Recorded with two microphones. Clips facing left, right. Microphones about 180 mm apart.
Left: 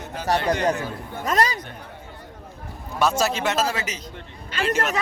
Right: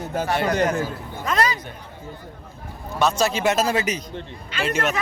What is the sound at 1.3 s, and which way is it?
Speech, 40° left (ahead or behind).